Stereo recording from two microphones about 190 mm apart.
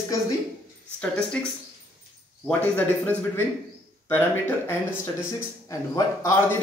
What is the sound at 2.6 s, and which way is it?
A man's voice, 10° left (ahead or behind).